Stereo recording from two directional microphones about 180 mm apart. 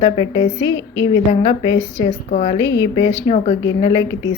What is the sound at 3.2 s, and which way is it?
Speech, 35° left (ahead or behind).